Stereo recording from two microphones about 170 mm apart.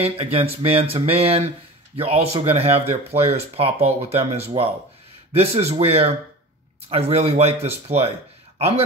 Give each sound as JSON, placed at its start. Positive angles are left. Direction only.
{"t": 0.0, "sound": "speech", "side_deg": -35}